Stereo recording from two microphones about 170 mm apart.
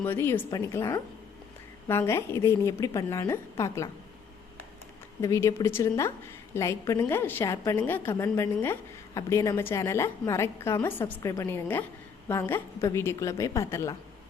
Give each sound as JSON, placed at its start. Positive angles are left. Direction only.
{"t": 0.0, "sound": "a woman's voice", "side_deg": 10}
{"t": 5.2, "sound": "a woman's voice", "side_deg": 20}